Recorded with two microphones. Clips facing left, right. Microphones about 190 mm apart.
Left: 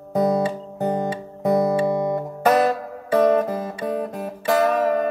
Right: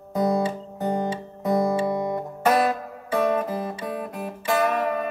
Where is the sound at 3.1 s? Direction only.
45° left (ahead or behind).